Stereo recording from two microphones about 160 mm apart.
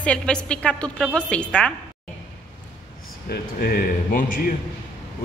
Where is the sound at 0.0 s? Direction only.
5° left (ahead or behind).